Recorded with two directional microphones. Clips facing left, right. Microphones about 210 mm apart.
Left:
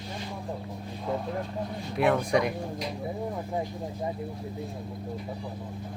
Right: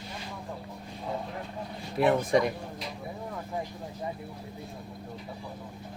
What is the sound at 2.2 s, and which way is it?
Speech, centre (ahead or behind).